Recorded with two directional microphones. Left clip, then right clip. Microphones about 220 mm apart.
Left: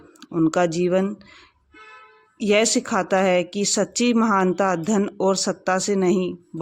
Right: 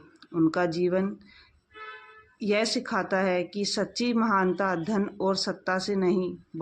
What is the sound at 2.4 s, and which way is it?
Speech, 45° left (ahead or behind).